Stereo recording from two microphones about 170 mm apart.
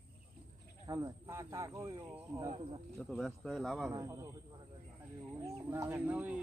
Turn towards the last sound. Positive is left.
turn(degrees=-10)  # may be behind; listen again after turning